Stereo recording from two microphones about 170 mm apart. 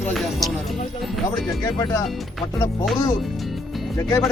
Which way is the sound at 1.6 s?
20° left (ahead or behind).